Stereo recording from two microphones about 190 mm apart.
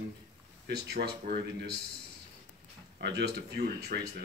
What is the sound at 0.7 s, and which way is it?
Speech, 60° right (ahead or behind).